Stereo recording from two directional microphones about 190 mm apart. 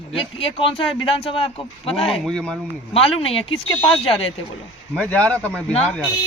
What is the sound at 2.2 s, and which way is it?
Speech, 5° left (ahead or behind).